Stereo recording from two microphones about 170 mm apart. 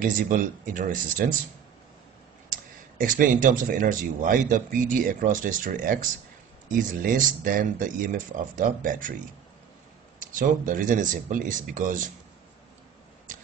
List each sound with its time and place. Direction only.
0.0 s speech: 55° right (ahead or behind)
3.0 s speech: 55° right (ahead or behind)
10.2 s speech: 50° right (ahead or behind)